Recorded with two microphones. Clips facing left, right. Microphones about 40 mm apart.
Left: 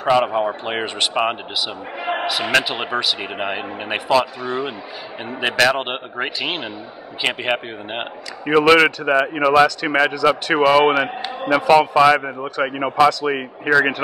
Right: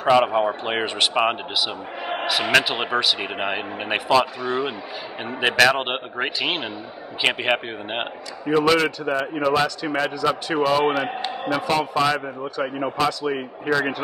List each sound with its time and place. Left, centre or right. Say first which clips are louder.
0.0 s speech: even; centre
2.5 s speech: even; centre
8.5 s a man's voice: left 5 dB; left